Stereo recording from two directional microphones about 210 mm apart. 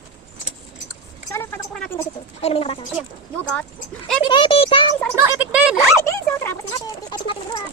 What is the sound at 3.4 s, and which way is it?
Speech, 5° left (ahead or behind).